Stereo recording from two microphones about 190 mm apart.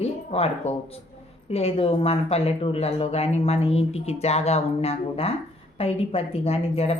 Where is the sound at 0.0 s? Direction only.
35° left (ahead or behind).